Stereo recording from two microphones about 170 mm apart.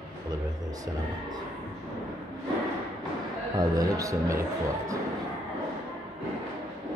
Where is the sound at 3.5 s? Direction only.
20° right (ahead or behind).